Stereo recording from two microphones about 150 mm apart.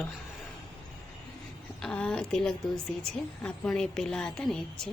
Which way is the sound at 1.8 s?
5° left (ahead or behind).